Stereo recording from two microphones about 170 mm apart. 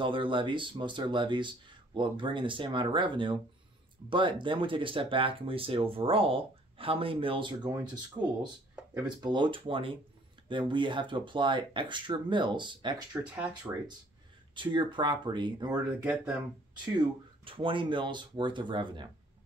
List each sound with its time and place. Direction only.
0.0 s speech: 30° right (ahead or behind)
13.7 s speech: 10° right (ahead or behind)
14.5 s speech: 30° right (ahead or behind)
16.0 s speech: 5° right (ahead or behind)
17.5 s speech: 30° right (ahead or behind)